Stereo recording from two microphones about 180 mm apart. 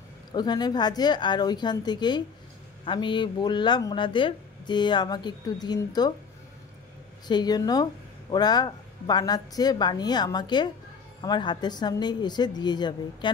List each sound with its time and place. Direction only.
0.3 s speech: 25° left (ahead or behind)
7.2 s speech: 25° left (ahead or behind)